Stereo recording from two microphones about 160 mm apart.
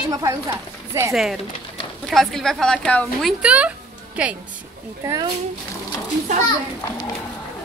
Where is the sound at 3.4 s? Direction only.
10° right (ahead or behind).